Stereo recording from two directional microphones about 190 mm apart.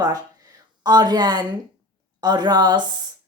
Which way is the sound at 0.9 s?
20° right (ahead or behind).